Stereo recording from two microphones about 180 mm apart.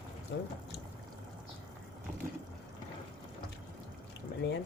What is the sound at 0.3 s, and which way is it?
Speech, 80° left.